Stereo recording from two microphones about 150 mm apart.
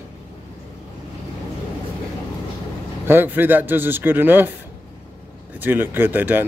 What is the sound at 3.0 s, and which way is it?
Speech, 15° right (ahead or behind).